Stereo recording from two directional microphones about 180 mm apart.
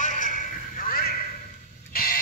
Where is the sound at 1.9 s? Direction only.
55° left (ahead or behind).